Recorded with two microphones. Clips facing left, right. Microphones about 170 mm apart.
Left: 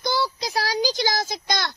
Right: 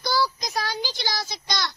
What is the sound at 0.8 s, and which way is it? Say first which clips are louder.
Speech: left 7 dB; 40° left (ahead or behind).